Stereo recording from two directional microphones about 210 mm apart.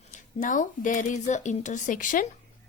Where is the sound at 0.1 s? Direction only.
40° left (ahead or behind).